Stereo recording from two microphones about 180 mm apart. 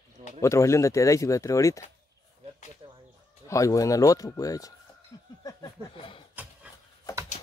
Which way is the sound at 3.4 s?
20° left (ahead or behind).